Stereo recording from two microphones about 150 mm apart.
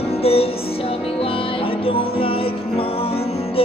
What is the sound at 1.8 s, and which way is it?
Music, 40° left (ahead or behind).